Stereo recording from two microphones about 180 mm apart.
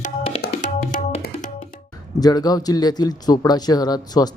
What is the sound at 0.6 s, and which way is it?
Tabla, 45° left (ahead or behind).